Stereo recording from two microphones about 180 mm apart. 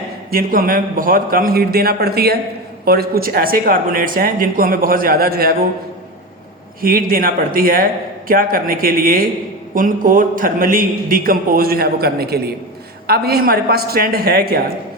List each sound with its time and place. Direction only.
0.3 s a man's voice: 55° right (ahead or behind)
6.8 s a man's voice: 55° right (ahead or behind)